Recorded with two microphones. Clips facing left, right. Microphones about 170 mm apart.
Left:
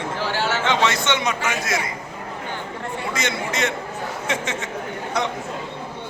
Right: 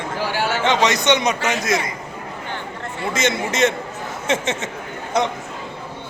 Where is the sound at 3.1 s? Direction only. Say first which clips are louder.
Right 6 dB; 20° right (ahead or behind).